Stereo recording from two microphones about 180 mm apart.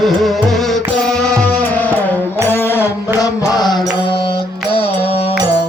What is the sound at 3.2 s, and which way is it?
Mantra, 20° left (ahead or behind).